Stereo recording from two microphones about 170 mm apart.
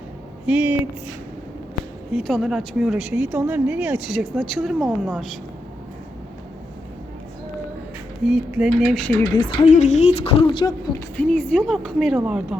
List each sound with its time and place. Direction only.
0.4 s speech: 10° right (ahead or behind)
2.1 s speech: centre (ahead or behind)
8.2 s speech: 5° right (ahead or behind)
9.2 s speech: 25° left (ahead or behind)
9.6 s speech: 45° left (ahead or behind); by 10.9 s 25° left (ahead or behind)
11.2 s speech: 5° left (ahead or behind)